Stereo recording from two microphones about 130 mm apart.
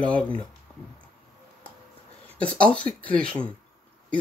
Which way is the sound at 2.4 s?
10° left (ahead or behind).